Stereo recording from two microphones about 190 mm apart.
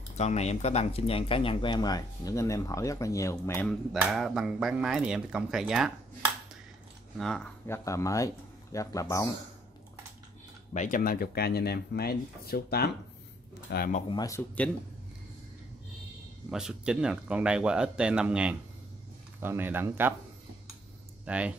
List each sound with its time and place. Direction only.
0.2 s speech: 35° left (ahead or behind); by 3.7 s 10° left (ahead or behind)
3.9 s speech: centre (ahead or behind)
7.2 s speech: centre (ahead or behind)
7.6 s speech: 15° left (ahead or behind)
10.7 s speech: 40° left (ahead or behind)
14.0 s speech: 20° left (ahead or behind)
16.4 s speech: 5° right (ahead or behind)
21.3 s speech: 5° right (ahead or behind)